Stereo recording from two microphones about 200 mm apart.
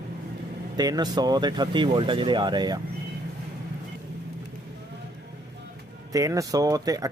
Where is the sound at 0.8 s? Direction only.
20° right (ahead or behind).